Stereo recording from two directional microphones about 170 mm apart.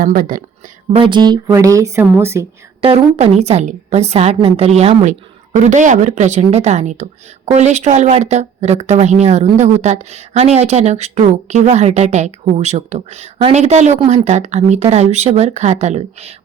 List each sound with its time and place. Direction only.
0.0 s speech: 55° right (ahead or behind)
0.9 s a woman's voice: 30° right (ahead or behind)
2.8 s a woman's voice: 35° right (ahead or behind)